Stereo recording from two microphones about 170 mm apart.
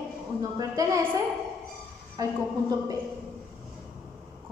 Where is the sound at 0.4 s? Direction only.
20° right (ahead or behind).